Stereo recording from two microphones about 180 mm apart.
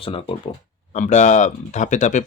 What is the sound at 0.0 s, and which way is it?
Speech, 30° left (ahead or behind).